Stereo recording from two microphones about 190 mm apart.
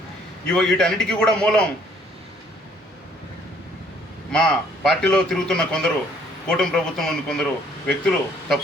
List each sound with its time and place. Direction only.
0.4 s a man's voice: 5° left (ahead or behind)
4.3 s a man's voice: 5° left (ahead or behind)